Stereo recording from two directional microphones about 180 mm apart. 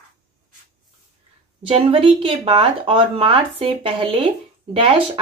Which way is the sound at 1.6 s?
30° right (ahead or behind).